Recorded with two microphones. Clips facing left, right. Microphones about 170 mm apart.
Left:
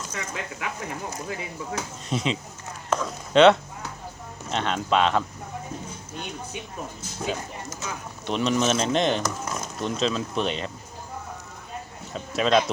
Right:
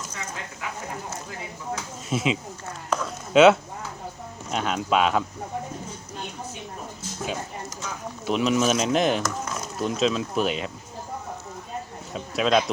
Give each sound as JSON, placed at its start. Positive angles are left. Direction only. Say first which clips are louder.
{"t": 0.1, "sound": "speech", "louder": "left 3 dB", "side_deg": 65}
{"t": 2.0, "sound": "speech", "louder": "right 3 dB", "side_deg": -5}
{"t": 8.3, "sound": "speech", "louder": "right 1 dB", "side_deg": -5}
{"t": 12.1, "sound": "speech", "louder": "even", "side_deg": 0}